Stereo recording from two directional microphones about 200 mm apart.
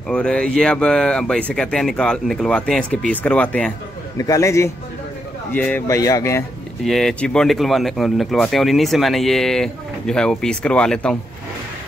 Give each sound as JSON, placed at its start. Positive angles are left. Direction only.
{"t": 0.1, "sound": "speech", "side_deg": 5}
{"t": 4.2, "sound": "speech", "side_deg": 15}
{"t": 6.8, "sound": "speech", "side_deg": 0}